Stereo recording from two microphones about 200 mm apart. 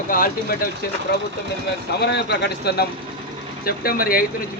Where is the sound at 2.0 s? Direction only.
55° left (ahead or behind).